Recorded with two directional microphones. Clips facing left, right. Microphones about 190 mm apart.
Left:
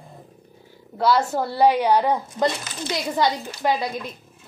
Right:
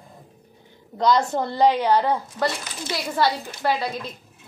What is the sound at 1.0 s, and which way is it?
A woman's voice, 5° left (ahead or behind).